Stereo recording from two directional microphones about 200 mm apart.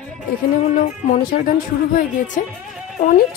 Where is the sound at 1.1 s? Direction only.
45° left (ahead or behind).